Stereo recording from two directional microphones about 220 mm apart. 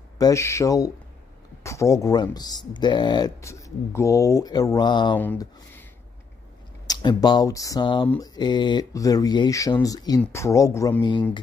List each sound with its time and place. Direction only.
0.2 s speech: 15° left (ahead or behind)
5.1 s speech: 10° left (ahead or behind)
6.9 s speech: 20° left (ahead or behind)